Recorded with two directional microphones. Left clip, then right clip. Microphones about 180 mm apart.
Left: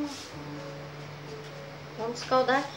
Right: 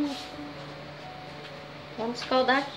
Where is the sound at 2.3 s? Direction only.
25° right (ahead or behind).